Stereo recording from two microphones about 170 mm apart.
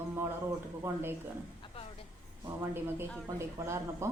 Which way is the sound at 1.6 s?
35° left (ahead or behind).